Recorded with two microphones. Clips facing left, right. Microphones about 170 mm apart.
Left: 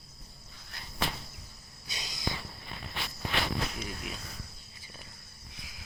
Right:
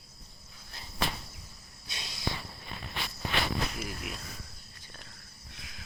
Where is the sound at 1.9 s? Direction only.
Centre (ahead or behind).